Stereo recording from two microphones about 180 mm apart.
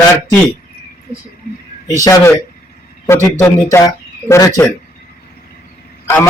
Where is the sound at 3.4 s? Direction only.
15° left (ahead or behind).